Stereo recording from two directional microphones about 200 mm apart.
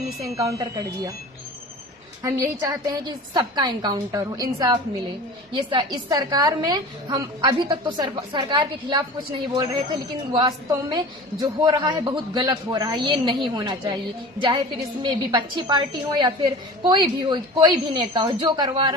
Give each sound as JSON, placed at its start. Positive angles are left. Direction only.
{"t": 0.4, "sound": "a woman's voice", "side_deg": -15}
{"t": 2.2, "sound": "a woman's voice", "side_deg": -15}
{"t": 15.0, "sound": "a woman's voice", "side_deg": -25}